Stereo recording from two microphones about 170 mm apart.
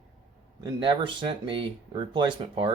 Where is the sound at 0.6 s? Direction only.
25° right (ahead or behind).